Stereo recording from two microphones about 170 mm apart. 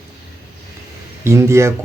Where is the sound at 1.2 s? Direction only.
15° right (ahead or behind).